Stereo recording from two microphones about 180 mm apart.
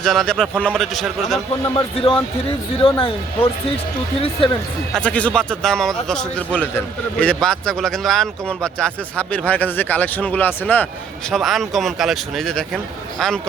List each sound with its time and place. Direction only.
0.0 s speech: centre (ahead or behind)
1.7 s speech: 30° left (ahead or behind)
4.9 s speech: 5° left (ahead or behind)